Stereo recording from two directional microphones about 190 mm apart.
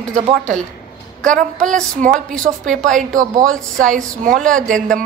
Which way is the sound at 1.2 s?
5° left (ahead or behind).